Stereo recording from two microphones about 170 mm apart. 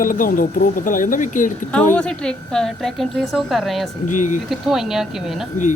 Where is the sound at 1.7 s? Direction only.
5° left (ahead or behind).